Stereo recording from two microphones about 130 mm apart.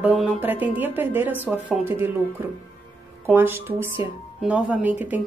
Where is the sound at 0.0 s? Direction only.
5° right (ahead or behind).